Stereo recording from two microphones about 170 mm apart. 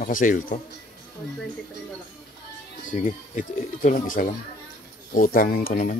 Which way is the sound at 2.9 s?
45° left (ahead or behind).